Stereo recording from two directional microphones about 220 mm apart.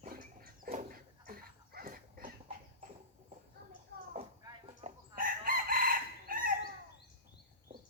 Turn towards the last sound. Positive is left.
turn(degrees=-40)  # may be behind; listen again after turning